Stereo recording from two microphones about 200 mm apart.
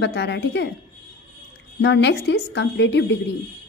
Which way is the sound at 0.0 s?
60° left (ahead or behind).